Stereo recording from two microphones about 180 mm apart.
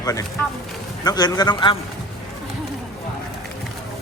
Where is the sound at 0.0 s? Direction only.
20° left (ahead or behind).